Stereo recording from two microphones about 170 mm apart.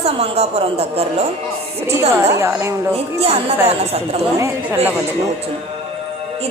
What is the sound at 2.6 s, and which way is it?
Speech, 15° right (ahead or behind).